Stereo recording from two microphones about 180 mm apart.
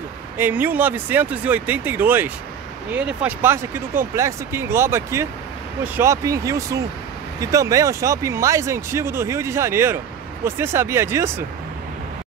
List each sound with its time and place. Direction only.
0.4 s speech: 10° right (ahead or behind)